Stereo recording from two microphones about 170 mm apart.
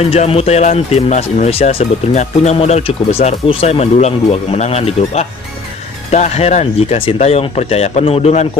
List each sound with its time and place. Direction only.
0.0 s speech: 35° left (ahead or behind)